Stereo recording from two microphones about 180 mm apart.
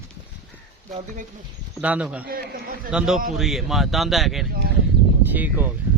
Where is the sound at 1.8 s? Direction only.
5° right (ahead or behind).